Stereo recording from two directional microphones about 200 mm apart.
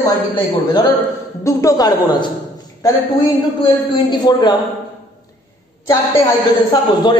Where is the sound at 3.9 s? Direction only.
25° left (ahead or behind).